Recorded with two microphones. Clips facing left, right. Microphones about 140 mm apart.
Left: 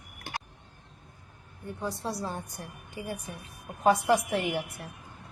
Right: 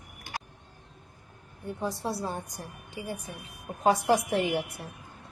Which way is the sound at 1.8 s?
25° right (ahead or behind).